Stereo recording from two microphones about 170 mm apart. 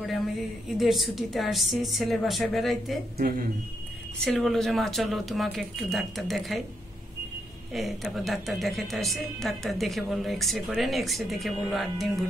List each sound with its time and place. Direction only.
0.7 s a woman's voice: centre (ahead or behind)
4.2 s a woman's voice: centre (ahead or behind)
7.7 s a woman's voice: centre (ahead or behind)